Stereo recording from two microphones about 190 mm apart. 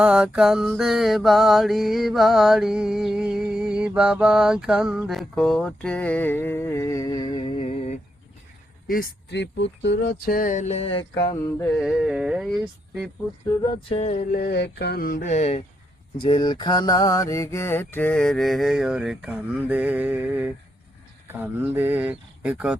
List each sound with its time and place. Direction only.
0.0 s mantra: 5° right (ahead or behind); by 7.9 s 30° left (ahead or behind)
8.9 s speech: 50° left (ahead or behind); by 11.0 s 30° left (ahead or behind)
11.1 s mantra: 20° left (ahead or behind)
11.7 s mantra: centre (ahead or behind)
13.8 s a sound: 35° left (ahead or behind)
16.1 s mantra: 25° left (ahead or behind); by 20.5 s 10° right (ahead or behind)
21.4 s speech: 10° right (ahead or behind)